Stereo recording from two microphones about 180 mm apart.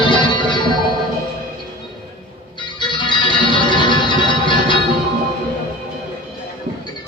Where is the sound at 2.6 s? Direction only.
25° left (ahead or behind).